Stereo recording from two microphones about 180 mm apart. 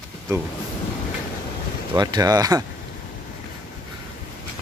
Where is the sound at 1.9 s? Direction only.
25° right (ahead or behind).